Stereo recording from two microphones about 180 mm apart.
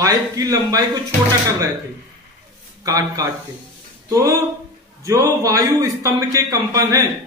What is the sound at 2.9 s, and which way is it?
A man's voice, 20° right (ahead or behind).